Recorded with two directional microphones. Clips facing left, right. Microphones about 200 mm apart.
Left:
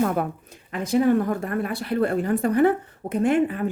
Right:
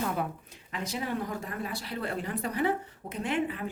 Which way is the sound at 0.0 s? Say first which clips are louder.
Left 8 dB; 55° left (ahead or behind).